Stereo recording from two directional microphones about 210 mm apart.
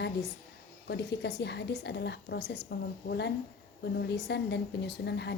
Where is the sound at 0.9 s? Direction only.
55° left (ahead or behind).